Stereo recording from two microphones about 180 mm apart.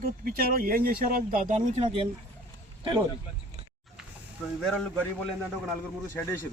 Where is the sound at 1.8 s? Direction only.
30° right (ahead or behind).